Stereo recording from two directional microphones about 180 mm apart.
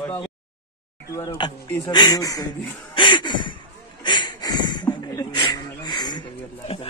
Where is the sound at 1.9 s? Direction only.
20° left (ahead or behind).